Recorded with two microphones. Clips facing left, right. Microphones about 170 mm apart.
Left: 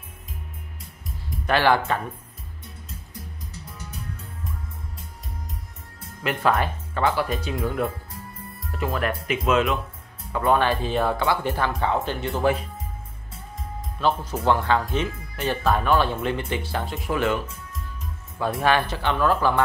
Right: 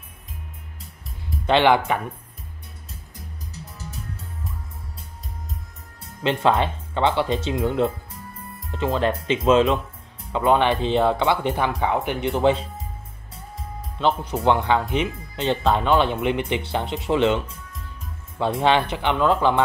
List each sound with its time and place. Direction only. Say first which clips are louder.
1.4 s speech: right 3 dB; 20° right (ahead or behind)
6.2 s speech: right 3 dB; 25° right (ahead or behind)
13.9 s speech: right 2 dB; 20° right (ahead or behind)